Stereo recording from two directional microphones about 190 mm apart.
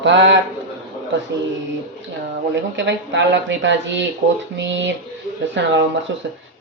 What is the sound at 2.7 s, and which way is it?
Speech, 70° right (ahead or behind).